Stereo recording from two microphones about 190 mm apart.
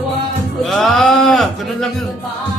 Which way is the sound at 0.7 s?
Centre (ahead or behind).